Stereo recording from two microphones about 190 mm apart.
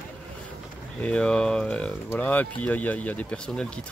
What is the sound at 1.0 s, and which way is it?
Speech, 5° left (ahead or behind).